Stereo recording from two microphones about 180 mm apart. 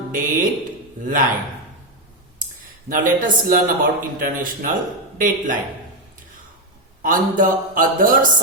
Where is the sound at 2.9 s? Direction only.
50° right (ahead or behind).